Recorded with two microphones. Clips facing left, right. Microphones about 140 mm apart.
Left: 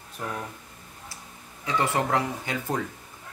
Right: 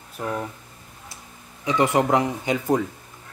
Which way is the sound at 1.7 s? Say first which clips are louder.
Right 6 dB; 15° right (ahead or behind).